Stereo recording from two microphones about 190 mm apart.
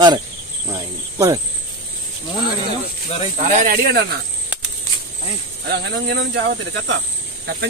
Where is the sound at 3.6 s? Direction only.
50° right (ahead or behind).